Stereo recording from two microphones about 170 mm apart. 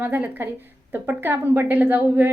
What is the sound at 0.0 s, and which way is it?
A woman's voice, 10° right (ahead or behind).